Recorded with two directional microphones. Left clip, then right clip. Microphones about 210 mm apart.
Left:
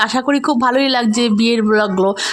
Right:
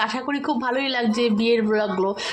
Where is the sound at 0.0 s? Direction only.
55° left (ahead or behind).